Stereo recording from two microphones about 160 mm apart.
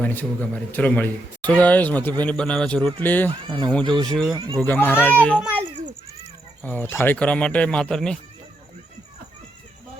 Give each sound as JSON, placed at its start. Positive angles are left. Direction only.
{"t": 0.0, "sound": "a man's voice", "side_deg": 10}
{"t": 3.4, "sound": "speech", "side_deg": -30}
{"t": 3.9, "sound": "speech", "side_deg": 5}
{"t": 4.4, "sound": "speech", "side_deg": -30}
{"t": 4.6, "sound": "a man's voice", "side_deg": 10}
{"t": 6.6, "sound": "a man's voice", "side_deg": 10}